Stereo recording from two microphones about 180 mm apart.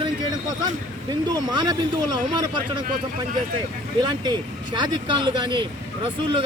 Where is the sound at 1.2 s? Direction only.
25° right (ahead or behind).